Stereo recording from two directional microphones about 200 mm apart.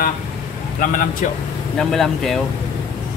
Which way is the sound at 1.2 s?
40° left (ahead or behind).